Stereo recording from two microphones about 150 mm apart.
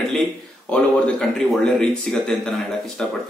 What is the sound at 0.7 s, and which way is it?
A man's voice, 5° left (ahead or behind).